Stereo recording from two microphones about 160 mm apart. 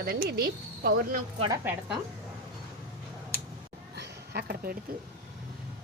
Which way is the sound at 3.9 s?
85° right.